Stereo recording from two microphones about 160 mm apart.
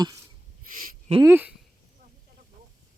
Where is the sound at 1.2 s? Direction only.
15° right (ahead or behind).